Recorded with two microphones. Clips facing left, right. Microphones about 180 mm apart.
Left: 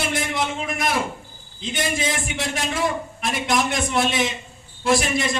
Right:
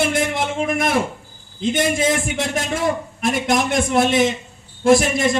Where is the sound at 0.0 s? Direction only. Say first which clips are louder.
Right 5 dB; 50° right (ahead or behind).